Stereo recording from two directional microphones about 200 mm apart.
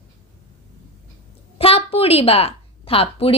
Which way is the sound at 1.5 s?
30° left (ahead or behind).